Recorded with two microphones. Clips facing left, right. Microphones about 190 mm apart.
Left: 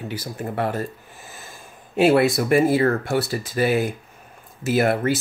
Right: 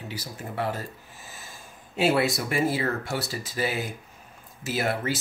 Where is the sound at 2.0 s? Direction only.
55° left (ahead or behind).